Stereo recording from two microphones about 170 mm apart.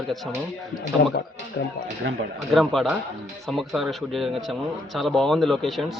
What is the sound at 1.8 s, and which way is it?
Speech, 60° left (ahead or behind).